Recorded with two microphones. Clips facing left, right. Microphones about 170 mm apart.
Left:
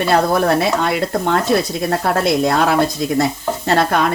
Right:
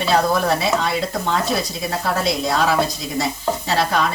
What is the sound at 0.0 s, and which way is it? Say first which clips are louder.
Speech: left 3 dB; 55° left (ahead or behind).